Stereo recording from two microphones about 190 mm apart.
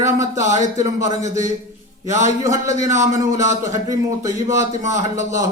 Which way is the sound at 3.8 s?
15° right (ahead or behind).